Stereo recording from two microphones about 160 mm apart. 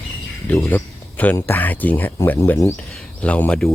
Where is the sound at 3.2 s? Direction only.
10° left (ahead or behind).